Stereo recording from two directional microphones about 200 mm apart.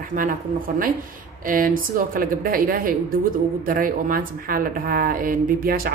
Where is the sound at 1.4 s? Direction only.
45° right (ahead or behind).